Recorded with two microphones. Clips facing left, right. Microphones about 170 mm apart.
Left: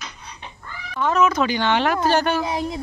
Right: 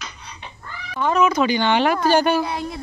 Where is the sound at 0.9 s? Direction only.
Centre (ahead or behind).